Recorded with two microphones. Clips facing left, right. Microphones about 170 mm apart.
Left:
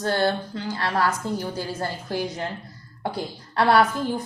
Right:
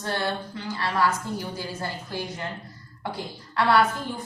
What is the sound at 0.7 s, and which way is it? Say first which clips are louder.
Speech: left 1 dB; 45° left (ahead or behind).